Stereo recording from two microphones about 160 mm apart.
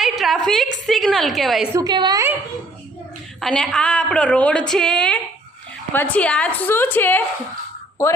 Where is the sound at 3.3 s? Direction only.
5° left (ahead or behind).